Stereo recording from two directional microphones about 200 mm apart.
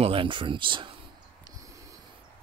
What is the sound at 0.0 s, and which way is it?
Speech, 25° right (ahead or behind).